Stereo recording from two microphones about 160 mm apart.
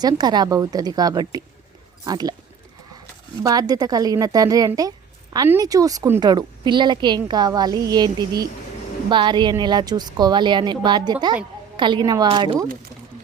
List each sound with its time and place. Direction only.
0.0 s a woman's voice: 25° right (ahead or behind)
3.4 s a woman's voice: 25° right (ahead or behind)